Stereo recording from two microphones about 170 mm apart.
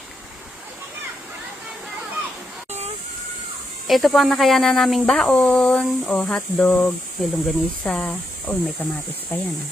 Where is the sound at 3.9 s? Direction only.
Centre (ahead or behind).